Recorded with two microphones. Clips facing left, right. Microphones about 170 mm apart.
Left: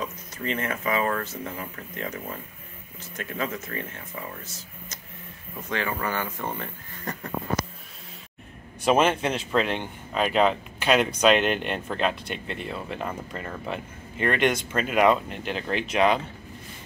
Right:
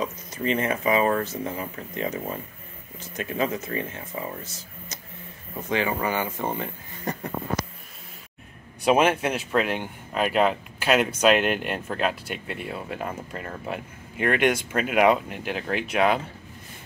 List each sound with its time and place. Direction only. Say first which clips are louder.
0.0 s speech: right 4 dB; 20° right (ahead or behind)
5.7 s speech: right 4 dB; 15° right (ahead or behind)
8.8 s speech: right 1 dB; 10° right (ahead or behind)